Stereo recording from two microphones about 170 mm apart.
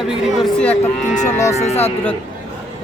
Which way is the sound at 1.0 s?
45° left (ahead or behind).